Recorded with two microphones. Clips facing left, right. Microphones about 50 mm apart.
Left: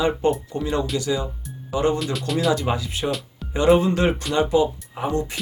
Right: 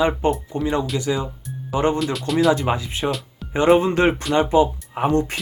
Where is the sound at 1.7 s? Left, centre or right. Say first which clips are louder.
Right 1 dB; right.